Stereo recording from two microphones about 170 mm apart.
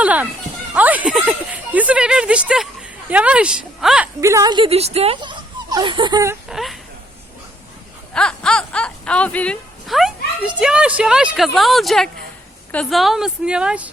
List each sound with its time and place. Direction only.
0.0 s children playing: 10° right (ahead or behind)
0.7 s speech: 10° right (ahead or behind)
4.2 s speech: 20° right (ahead or behind)
6.5 s a woman's voice: centre (ahead or behind)
8.1 s a woman's voice: 5° left (ahead or behind)